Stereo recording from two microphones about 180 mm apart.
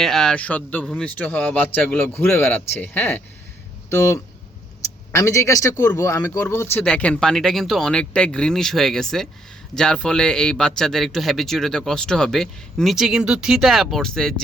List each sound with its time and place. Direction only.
0.0 s speech: centre (ahead or behind)